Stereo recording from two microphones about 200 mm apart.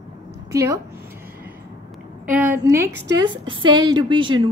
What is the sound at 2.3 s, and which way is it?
A woman's voice, 10° right (ahead or behind).